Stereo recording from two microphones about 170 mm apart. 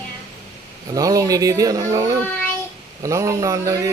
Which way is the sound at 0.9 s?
20° right (ahead or behind).